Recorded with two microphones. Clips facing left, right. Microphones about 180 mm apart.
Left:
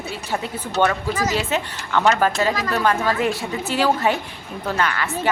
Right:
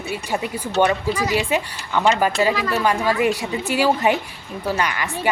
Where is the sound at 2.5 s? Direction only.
45° left (ahead or behind).